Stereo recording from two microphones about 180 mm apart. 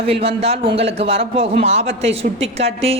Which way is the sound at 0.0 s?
35° right (ahead or behind).